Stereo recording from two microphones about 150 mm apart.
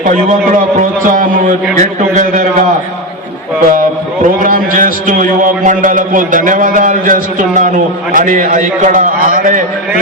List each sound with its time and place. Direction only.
0.0 s a man's voice: 60° right (ahead or behind)
3.7 s a man's voice: 65° right (ahead or behind)